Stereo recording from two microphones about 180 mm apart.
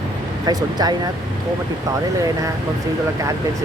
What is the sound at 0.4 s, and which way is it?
Speech, 20° right (ahead or behind).